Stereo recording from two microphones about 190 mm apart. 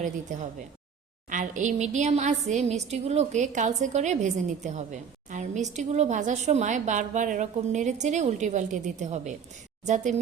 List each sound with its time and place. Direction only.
0.3 s a woman's voice: 40° right (ahead or behind)